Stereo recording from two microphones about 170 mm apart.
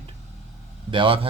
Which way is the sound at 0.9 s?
30° right (ahead or behind).